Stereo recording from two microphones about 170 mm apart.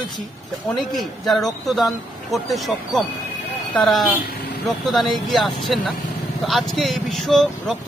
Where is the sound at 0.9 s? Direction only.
Centre (ahead or behind).